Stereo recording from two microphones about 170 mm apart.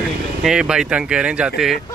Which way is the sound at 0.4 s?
5° right (ahead or behind).